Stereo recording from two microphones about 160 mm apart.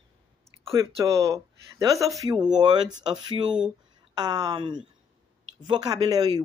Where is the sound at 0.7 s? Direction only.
20° right (ahead or behind).